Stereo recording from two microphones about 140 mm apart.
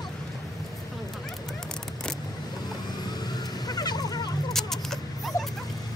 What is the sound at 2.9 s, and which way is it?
Cat, 30° left (ahead or behind).